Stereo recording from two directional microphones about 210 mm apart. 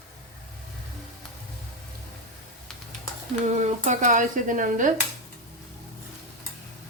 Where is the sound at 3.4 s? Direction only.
35° right (ahead or behind).